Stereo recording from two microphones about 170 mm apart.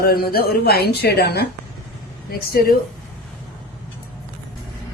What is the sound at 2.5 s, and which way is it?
Speech, 60° left (ahead or behind).